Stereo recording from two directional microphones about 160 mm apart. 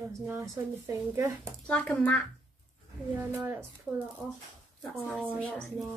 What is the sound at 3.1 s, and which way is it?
Speech, 15° right (ahead or behind).